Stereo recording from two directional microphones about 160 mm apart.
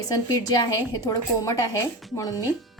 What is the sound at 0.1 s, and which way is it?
A woman's voice, 25° left (ahead or behind).